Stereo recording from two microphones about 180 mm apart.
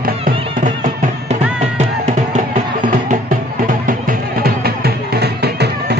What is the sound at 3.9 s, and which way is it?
Music, 55° right (ahead or behind).